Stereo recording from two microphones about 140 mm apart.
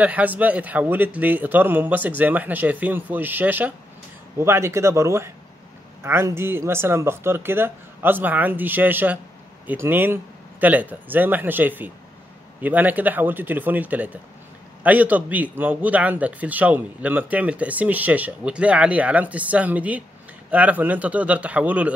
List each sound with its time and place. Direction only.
0.0 s a man's voice: 10° right (ahead or behind)